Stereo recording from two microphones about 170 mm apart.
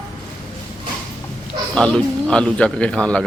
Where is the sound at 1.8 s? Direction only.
5° left (ahead or behind).